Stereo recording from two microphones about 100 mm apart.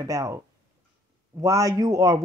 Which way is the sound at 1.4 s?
30° right (ahead or behind).